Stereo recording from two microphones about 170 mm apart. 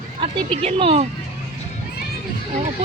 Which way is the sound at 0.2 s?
35° right (ahead or behind).